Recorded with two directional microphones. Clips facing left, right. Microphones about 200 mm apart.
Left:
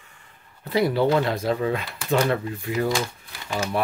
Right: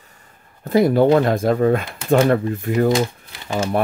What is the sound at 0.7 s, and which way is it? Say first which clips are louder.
Speech: right 7 dB; 45° right (ahead or behind).